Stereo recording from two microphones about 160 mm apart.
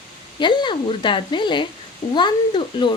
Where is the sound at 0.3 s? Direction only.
30° left (ahead or behind).